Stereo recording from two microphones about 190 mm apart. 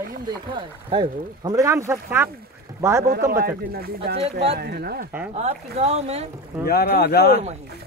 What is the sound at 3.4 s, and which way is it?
Speech, 55° right (ahead or behind).